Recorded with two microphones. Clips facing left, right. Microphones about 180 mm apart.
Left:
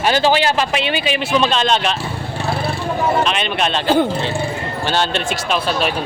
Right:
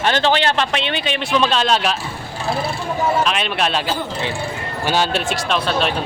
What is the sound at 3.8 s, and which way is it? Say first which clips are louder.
Speech: left 9 dB; 60° left (ahead or behind).